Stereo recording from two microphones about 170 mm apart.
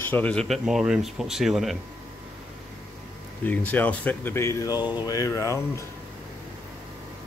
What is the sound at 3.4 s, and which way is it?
Speech, 10° left (ahead or behind).